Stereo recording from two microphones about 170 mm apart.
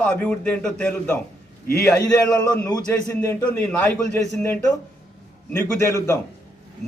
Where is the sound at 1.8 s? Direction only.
20° left (ahead or behind).